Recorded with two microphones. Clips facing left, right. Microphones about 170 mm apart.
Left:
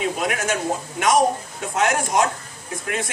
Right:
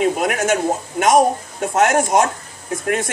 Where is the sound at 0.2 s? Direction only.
45° right (ahead or behind).